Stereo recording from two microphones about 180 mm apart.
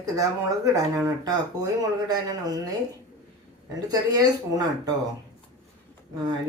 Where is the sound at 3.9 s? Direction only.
20° right (ahead or behind).